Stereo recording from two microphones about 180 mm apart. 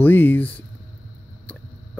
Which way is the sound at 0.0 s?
10° left (ahead or behind).